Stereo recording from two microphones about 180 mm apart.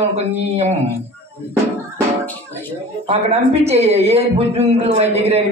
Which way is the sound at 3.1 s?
35° right (ahead or behind).